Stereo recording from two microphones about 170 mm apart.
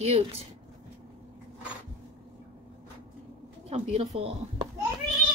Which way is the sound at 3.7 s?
35° right (ahead or behind).